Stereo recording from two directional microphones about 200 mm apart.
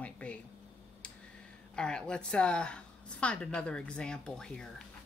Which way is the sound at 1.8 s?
5° left (ahead or behind).